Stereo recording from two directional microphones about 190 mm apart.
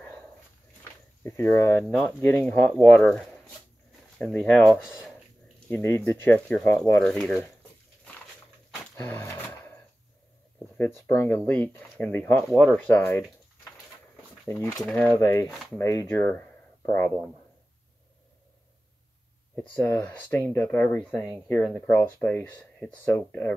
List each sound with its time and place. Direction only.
1.2 s speech: 15° left (ahead or behind); by 5.1 s 5° right (ahead or behind)
5.7 s speech: 15° left (ahead or behind)
8.9 s a sound: 10° left (ahead or behind)
10.8 s speech: 10° left (ahead or behind)
14.8 s speech: centre (ahead or behind)
15.1 s speech: 15° left (ahead or behind)
15.5 s speech: centre (ahead or behind)
15.8 s speech: 15° left (ahead or behind)
19.7 s speech: 10° left (ahead or behind)